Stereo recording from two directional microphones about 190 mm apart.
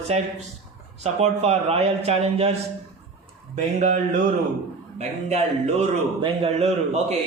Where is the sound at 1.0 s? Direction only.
35° right (ahead or behind).